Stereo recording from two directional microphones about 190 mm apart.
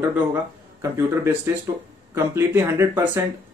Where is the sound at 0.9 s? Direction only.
15° right (ahead or behind).